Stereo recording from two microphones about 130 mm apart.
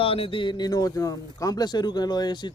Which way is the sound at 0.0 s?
45° left (ahead or behind).